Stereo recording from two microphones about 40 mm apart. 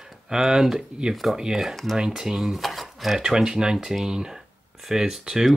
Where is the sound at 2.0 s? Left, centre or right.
Centre.